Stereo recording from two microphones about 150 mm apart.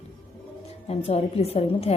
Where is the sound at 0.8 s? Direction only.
40° left (ahead or behind).